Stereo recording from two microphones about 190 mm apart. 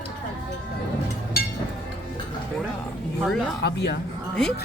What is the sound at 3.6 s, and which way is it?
Speech, 60° left (ahead or behind).